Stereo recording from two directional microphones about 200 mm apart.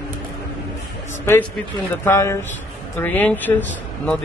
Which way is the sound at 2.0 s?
15° left (ahead or behind).